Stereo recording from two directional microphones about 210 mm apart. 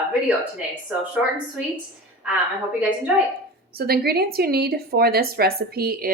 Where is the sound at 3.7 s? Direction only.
45° right (ahead or behind).